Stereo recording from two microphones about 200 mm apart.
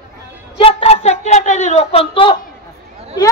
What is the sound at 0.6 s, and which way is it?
A woman's voice, 30° left (ahead or behind).